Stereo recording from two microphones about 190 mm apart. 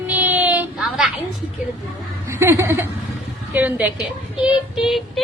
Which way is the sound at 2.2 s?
15° right (ahead or behind).